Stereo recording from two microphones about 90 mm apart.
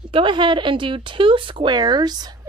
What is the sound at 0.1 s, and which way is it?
A woman's voice, 65° right (ahead or behind).